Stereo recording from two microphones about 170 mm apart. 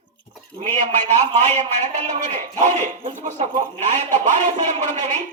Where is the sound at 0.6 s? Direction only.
45° right (ahead or behind).